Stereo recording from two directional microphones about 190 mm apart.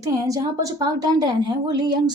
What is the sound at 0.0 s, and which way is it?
A woman's voice, 20° right (ahead or behind).